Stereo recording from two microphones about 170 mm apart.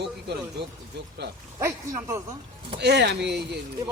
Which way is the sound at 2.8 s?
80° right.